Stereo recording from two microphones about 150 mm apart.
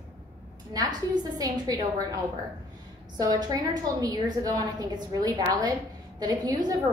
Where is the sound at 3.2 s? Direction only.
25° right (ahead or behind).